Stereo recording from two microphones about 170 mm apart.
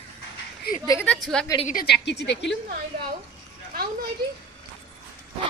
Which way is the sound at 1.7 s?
70° left (ahead or behind).